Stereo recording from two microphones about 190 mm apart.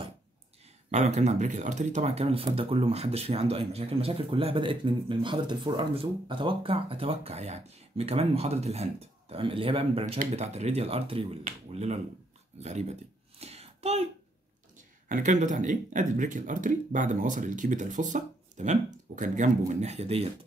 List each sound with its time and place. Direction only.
0.9 s speech: 35° right (ahead or behind)
12.5 s a sound: 35° right (ahead or behind)
15.0 s speech: 40° right (ahead or behind)